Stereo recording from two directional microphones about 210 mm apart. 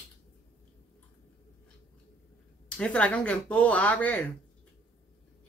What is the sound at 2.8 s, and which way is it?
Speech, 5° left (ahead or behind).